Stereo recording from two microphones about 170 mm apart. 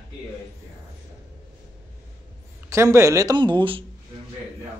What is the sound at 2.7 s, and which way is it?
Speech, 15° right (ahead or behind).